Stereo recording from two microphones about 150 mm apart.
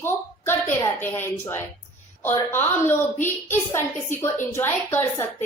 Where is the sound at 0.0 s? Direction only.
15° left (ahead or behind).